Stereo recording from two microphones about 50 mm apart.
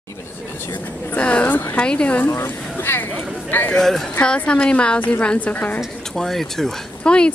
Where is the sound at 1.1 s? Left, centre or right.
Left.